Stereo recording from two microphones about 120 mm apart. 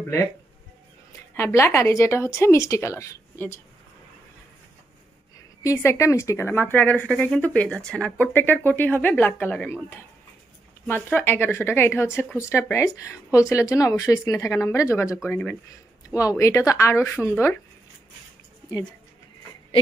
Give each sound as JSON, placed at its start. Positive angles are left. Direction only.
{"t": 1.3, "sound": "speech", "side_deg": 20}
{"t": 5.6, "sound": "speech", "side_deg": 25}
{"t": 11.1, "sound": "speech", "side_deg": 15}
{"t": 15.2, "sound": "speech", "side_deg": 15}
{"t": 16.1, "sound": "speech", "side_deg": 25}